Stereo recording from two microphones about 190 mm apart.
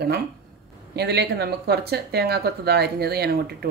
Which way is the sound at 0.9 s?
60° right (ahead or behind).